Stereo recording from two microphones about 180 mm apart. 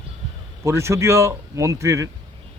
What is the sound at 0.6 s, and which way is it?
Speech, 15° right (ahead or behind).